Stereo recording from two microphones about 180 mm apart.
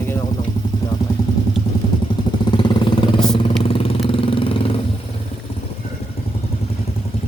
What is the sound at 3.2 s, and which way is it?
Vehicle, 5° left (ahead or behind).